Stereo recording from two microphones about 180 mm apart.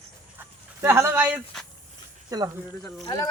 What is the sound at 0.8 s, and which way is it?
Speech, 15° right (ahead or behind).